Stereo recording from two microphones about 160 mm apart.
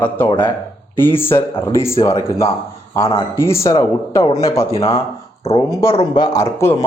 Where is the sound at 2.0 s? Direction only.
35° left (ahead or behind).